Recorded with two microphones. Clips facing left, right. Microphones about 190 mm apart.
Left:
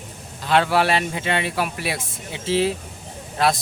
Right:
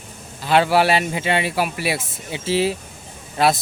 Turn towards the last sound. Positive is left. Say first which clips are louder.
# right 2 dB
turn(degrees=-5)  # may be behind; listen again after turning